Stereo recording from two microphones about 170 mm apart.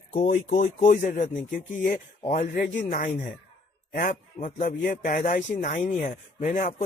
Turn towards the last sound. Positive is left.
turn(degrees=50)  # may be behind; listen again after turning